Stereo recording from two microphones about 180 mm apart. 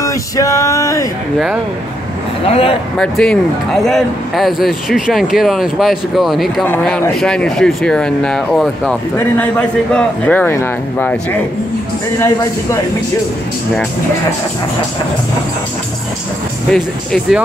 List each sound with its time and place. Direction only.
0.0 s a man's voice: 20° left (ahead or behind)
2.4 s speech: 35° left (ahead or behind)
3.0 s a man's voice: 5° left (ahead or behind)
16.7 s a man's voice: 5° left (ahead or behind)